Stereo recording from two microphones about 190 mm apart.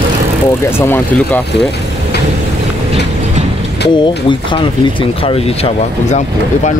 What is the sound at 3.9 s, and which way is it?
Speech, 25° left (ahead or behind).